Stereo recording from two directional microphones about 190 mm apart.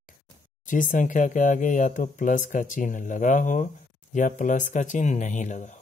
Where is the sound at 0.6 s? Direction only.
45° left (ahead or behind).